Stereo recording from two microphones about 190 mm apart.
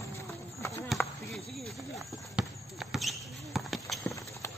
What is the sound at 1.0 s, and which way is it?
Chop, 10° left (ahead or behind).